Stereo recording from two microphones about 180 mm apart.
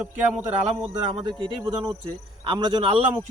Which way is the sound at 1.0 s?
25° right (ahead or behind).